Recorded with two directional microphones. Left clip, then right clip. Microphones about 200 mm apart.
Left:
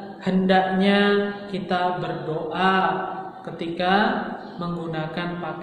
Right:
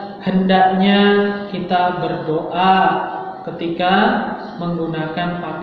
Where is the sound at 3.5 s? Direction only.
20° left (ahead or behind).